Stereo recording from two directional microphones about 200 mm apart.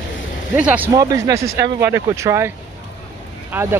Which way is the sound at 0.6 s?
10° right (ahead or behind).